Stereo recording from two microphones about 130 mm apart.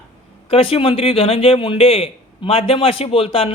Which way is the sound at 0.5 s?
45° left (ahead or behind).